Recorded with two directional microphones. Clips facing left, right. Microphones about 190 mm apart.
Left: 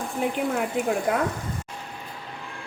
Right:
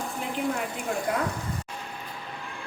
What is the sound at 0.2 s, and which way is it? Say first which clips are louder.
Speech: left 11 dB; 55° left (ahead or behind).